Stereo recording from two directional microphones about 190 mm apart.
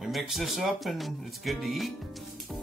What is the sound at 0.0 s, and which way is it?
Speech, centre (ahead or behind).